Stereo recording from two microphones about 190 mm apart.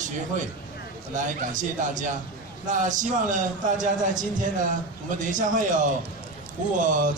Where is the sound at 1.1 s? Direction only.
40° right (ahead or behind).